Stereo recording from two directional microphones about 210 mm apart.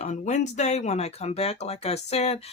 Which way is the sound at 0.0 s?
35° left (ahead or behind).